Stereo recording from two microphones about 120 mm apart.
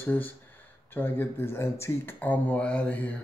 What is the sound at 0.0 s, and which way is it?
Speech, 15° left (ahead or behind).